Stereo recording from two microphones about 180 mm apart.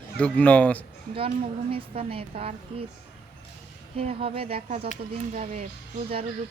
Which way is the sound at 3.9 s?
35° right (ahead or behind).